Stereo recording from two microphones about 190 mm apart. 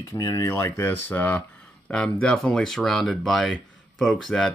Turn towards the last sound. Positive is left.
turn(degrees=0)  # may be behind; listen again after turning